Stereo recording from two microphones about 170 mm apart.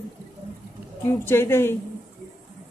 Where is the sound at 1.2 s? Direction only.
15° left (ahead or behind).